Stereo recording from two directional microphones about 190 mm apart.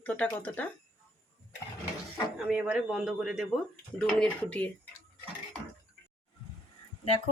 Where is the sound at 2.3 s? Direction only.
5° right (ahead or behind).